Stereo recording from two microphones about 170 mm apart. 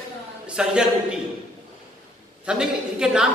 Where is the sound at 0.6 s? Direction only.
5° right (ahead or behind).